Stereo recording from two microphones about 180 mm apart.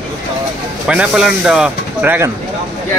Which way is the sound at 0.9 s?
5° right (ahead or behind).